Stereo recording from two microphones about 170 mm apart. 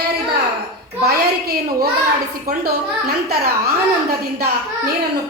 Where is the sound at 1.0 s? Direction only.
65° right (ahead or behind).